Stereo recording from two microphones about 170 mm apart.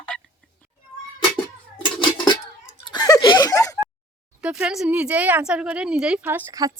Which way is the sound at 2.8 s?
25° left (ahead or behind).